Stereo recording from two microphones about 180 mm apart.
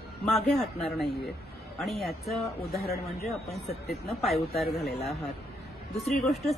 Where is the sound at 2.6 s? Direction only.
60° left (ahead or behind).